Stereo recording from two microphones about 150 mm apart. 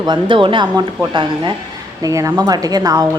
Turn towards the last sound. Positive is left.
turn(degrees=-25)  # may be behind; listen again after turning